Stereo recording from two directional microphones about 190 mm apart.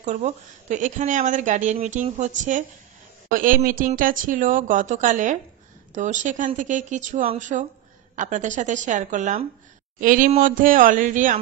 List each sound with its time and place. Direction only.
0.0 s a woman's voice: 40° right (ahead or behind)